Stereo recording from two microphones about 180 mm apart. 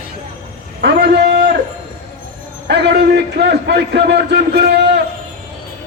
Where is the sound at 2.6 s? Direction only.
70° right (ahead or behind).